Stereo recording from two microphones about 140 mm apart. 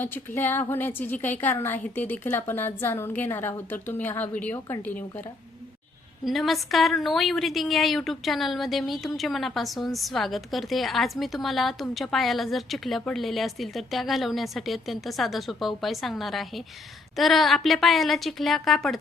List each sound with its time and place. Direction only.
0.0 s a woman's voice: 15° left (ahead or behind)
6.2 s a woman's voice: centre (ahead or behind)